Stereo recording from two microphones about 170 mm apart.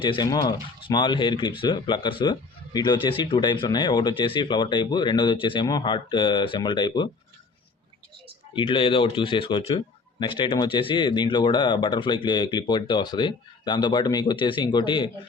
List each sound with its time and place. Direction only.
0.0 s speech: 25° left (ahead or behind)
8.5 s speech: 30° left (ahead or behind)